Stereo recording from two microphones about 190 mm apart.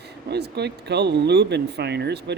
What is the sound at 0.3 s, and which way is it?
Speech, 60° right (ahead or behind).